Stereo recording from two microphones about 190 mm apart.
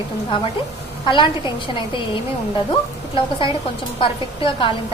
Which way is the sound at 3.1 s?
25° left (ahead or behind).